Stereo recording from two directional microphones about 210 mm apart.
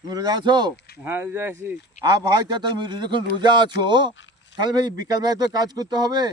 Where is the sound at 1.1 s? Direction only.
10° right (ahead or behind).